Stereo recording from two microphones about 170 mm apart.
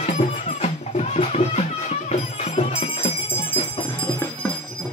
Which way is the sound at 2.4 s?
40° left (ahead or behind).